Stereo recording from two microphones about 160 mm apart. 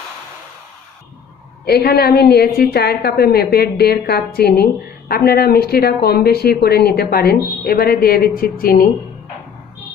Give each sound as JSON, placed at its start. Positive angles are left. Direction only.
{"t": 1.7, "sound": "a woman's voice", "side_deg": 75}